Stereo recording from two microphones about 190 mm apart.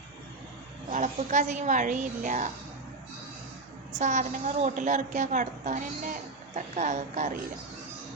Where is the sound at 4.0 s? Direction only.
40° right (ahead or behind).